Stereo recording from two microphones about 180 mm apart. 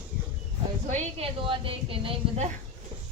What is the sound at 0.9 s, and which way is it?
A woman's voice, 30° right (ahead or behind).